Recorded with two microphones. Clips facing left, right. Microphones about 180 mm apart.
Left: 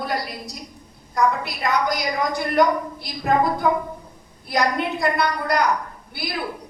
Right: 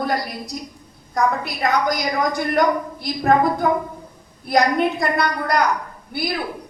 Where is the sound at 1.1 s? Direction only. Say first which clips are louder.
Right 1 dB; 45° right (ahead or behind).